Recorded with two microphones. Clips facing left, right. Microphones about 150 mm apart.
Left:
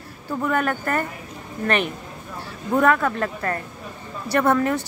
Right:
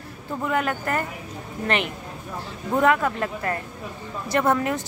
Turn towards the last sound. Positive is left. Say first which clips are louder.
# left 2 dB
turn(degrees=-20)  # may be behind; listen again after turning